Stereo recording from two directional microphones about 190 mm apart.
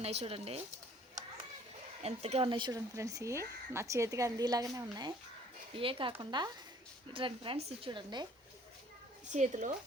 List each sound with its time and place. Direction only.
0.0 s speech: 35° right (ahead or behind)
2.0 s speech: 35° right (ahead or behind)
9.3 s speech: 40° right (ahead or behind)